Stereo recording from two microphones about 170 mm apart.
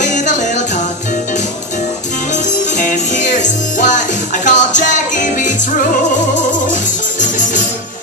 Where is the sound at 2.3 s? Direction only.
45° left (ahead or behind).